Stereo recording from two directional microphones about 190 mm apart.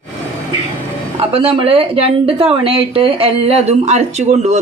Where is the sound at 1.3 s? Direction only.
30° right (ahead or behind).